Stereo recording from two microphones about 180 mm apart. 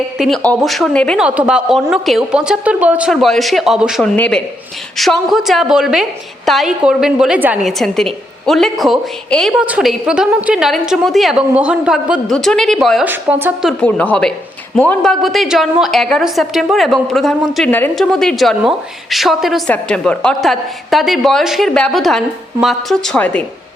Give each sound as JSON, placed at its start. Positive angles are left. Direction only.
{"t": 0.2, "sound": "a woman's voice", "side_deg": 0}
{"t": 13.7, "sound": "speech", "side_deg": 10}